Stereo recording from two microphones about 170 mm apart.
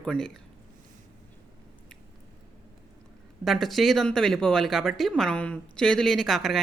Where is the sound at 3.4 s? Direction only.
Centre (ahead or behind).